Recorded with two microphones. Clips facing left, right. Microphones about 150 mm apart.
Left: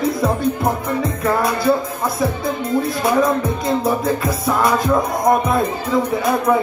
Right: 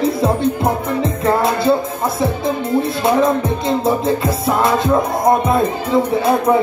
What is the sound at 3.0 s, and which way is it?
Music, 25° right (ahead or behind).